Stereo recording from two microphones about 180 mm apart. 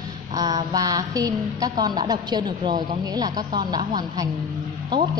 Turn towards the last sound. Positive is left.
turn(degrees=-25)  # may be behind; listen again after turning